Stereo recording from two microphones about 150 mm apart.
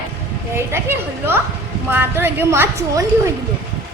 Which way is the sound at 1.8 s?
15° right (ahead or behind).